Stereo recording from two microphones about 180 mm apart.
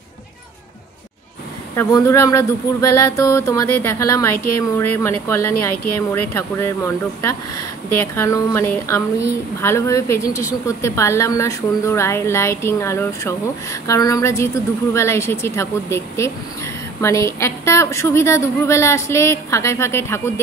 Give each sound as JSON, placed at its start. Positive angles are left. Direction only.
{"t": 1.8, "sound": "speech", "side_deg": 15}